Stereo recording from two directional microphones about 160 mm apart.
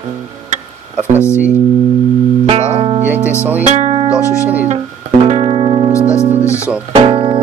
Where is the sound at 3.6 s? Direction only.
45° right (ahead or behind).